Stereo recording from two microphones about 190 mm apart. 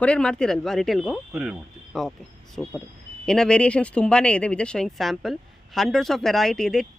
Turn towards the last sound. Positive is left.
turn(degrees=5)  # may be behind; listen again after turning